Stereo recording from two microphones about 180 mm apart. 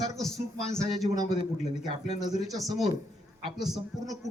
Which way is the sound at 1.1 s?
25° right (ahead or behind).